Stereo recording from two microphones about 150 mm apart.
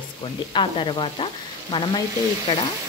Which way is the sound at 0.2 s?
35° left (ahead or behind).